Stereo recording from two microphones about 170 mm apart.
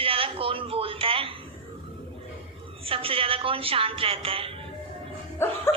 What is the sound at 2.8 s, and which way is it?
A woman's voice, 30° right (ahead or behind).